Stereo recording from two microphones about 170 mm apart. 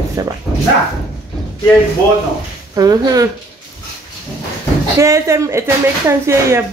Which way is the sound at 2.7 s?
20° right (ahead or behind).